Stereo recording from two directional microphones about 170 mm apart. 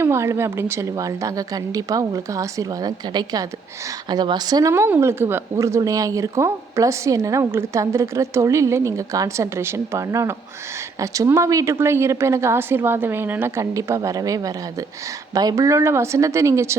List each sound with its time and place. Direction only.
0.0 s a woman's voice: 15° right (ahead or behind)